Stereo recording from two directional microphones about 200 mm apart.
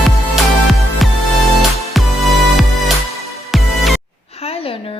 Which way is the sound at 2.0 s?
Centre (ahead or behind).